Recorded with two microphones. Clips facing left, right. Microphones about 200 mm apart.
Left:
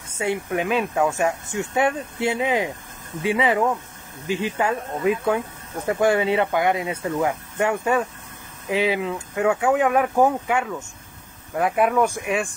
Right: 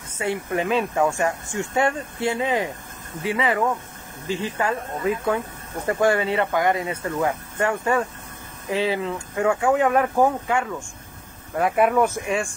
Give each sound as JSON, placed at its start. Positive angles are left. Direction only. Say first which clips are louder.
{"t": 0.5, "sound": "speech", "louder": "even", "side_deg": 5}
{"t": 7.6, "sound": "speech", "louder": "left 1 dB", "side_deg": 20}